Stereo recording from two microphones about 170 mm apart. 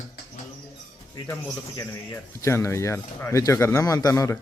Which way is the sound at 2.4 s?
15° left (ahead or behind).